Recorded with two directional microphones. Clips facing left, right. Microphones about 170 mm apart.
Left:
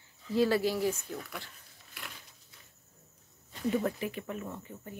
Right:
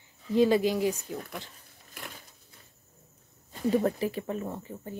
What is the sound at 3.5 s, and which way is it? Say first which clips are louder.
Speech: right 5 dB; 35° right (ahead or behind).